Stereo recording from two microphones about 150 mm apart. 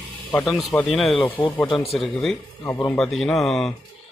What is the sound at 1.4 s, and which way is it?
Speech, 10° left (ahead or behind).